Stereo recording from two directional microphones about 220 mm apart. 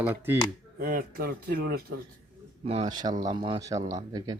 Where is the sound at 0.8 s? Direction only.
40° right (ahead or behind).